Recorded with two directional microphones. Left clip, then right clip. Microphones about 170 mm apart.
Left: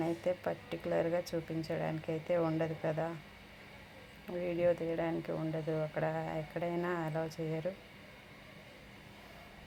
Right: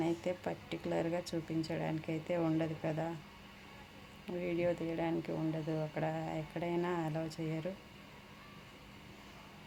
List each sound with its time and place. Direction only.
0.0 s speech: 10° right (ahead or behind)
4.3 s speech: 15° right (ahead or behind)